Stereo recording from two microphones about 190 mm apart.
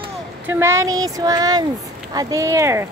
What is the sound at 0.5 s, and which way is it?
Speech, 15° right (ahead or behind).